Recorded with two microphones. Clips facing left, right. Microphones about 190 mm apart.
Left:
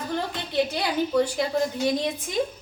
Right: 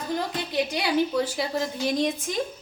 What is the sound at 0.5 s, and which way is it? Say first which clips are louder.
Speech: left 3 dB; 15° right (ahead or behind).